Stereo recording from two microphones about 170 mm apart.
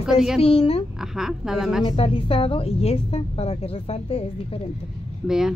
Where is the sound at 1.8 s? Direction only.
35° left (ahead or behind).